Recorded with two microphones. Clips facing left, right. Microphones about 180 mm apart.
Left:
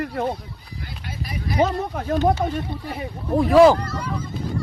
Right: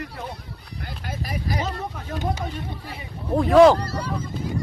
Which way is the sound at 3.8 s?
35° right (ahead or behind).